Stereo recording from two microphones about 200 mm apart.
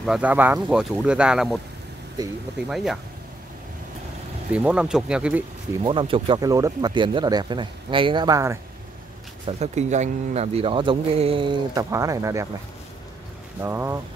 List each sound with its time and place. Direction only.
0.0 s speech: 5° right (ahead or behind)
2.7 s speech: centre (ahead or behind)
4.5 s speech: 5° right (ahead or behind)
5.8 s speech: 25° right (ahead or behind)
9.5 s speech: 35° right (ahead or behind); by 12.4 s 15° right (ahead or behind)
13.6 s speech: 10° right (ahead or behind)